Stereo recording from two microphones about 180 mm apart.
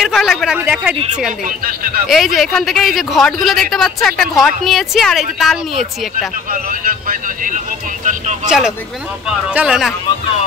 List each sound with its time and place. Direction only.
0.0 s a woman's voice: centre (ahead or behind)
6.5 s speech: 50° right (ahead or behind)
8.5 s a woman's voice: 5° right (ahead or behind)